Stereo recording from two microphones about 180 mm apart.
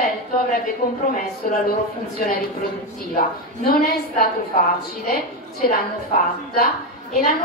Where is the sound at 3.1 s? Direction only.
55° left (ahead or behind).